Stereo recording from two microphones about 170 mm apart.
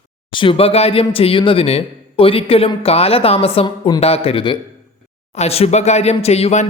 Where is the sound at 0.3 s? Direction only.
30° left (ahead or behind).